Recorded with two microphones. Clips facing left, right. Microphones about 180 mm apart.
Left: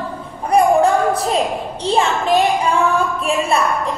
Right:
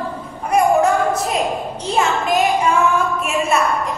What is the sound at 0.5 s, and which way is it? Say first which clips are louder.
A woman's voice: left 2 dB; 30° left (ahead or behind).